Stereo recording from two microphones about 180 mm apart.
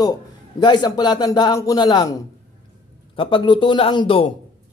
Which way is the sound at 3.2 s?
30° left (ahead or behind).